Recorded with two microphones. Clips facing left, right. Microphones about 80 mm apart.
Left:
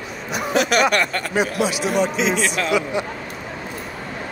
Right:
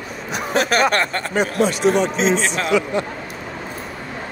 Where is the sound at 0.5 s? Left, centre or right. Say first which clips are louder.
Even; right.